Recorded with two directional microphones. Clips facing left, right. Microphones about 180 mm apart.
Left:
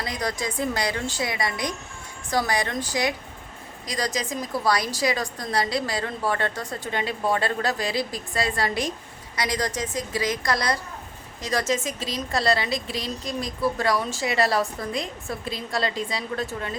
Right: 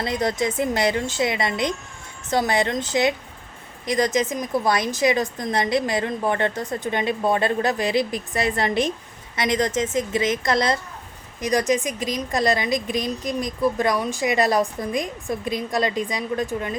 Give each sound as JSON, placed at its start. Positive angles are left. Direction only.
{"t": 0.0, "sound": "a woman's voice", "side_deg": -25}